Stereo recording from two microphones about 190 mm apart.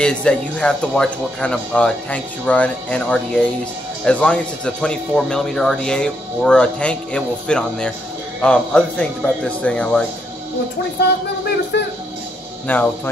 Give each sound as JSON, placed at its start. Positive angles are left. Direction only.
{"t": 0.0, "sound": "speech", "side_deg": 5}
{"t": 11.7, "sound": "speech", "side_deg": 65}
{"t": 12.6, "sound": "speech", "side_deg": 10}